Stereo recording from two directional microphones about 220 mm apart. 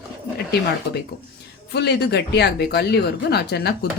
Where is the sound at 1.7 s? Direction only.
50° left (ahead or behind).